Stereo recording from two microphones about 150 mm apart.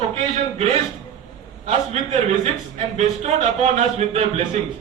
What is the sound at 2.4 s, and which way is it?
Speech, 45° right (ahead or behind).